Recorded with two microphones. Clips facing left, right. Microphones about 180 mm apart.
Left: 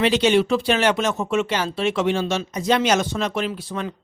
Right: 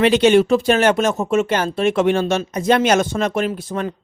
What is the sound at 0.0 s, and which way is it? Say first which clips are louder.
Speech: right 5 dB; 55° right (ahead or behind).